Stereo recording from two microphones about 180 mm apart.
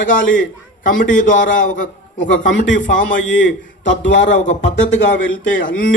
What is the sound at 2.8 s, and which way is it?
Speech, 45° left (ahead or behind).